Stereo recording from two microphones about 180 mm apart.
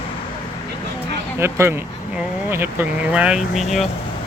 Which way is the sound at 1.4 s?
15° right (ahead or behind).